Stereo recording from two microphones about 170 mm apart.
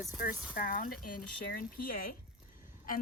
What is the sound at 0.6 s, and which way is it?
Speech, 60° left (ahead or behind).